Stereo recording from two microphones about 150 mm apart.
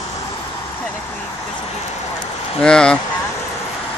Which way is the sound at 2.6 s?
5° left (ahead or behind).